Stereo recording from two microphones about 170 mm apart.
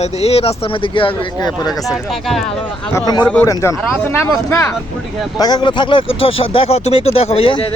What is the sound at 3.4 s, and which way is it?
Speech, 20° left (ahead or behind).